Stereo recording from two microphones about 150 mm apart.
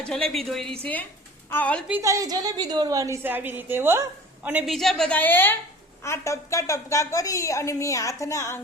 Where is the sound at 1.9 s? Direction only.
20° right (ahead or behind).